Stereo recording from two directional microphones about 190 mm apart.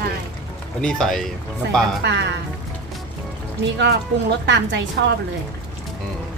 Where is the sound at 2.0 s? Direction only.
65° right (ahead or behind).